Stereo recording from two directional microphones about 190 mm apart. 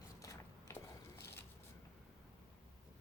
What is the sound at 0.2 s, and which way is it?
Biting, 15° left (ahead or behind).